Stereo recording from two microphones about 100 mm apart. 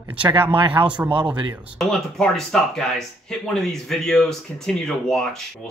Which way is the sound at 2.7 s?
5° left (ahead or behind).